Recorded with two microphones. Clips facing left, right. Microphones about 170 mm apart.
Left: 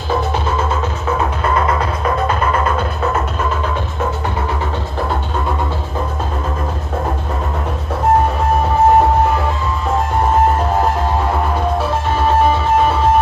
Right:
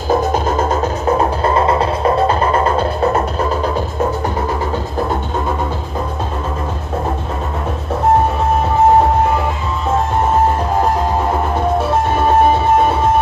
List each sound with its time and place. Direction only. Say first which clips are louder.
0.1 s music: right 3 dB; 40° right (ahead or behind)